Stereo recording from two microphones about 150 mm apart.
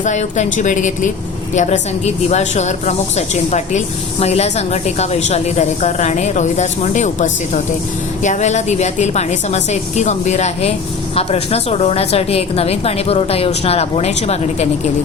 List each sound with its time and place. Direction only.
0.0 s a woman's voice: 50° left (ahead or behind)